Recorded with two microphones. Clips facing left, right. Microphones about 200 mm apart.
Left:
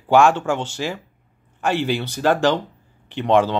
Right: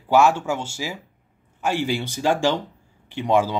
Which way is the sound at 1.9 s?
60° left (ahead or behind).